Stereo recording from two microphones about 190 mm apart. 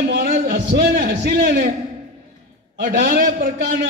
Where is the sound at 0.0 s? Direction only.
45° right (ahead or behind).